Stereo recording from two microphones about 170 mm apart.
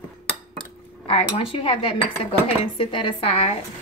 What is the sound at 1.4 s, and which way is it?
Cutlery, 30° left (ahead or behind).